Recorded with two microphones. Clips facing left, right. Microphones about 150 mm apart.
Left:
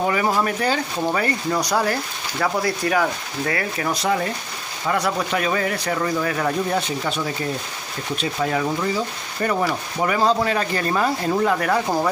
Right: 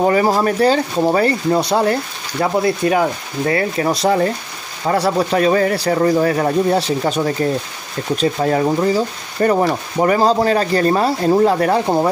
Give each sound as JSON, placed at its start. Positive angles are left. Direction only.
{"t": 0.0, "sound": "speech", "side_deg": -35}